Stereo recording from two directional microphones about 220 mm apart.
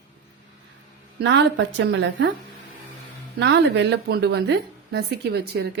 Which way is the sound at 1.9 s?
55° right (ahead or behind).